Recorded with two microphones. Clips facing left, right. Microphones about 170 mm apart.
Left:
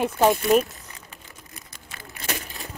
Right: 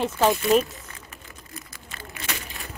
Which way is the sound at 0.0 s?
15° left (ahead or behind).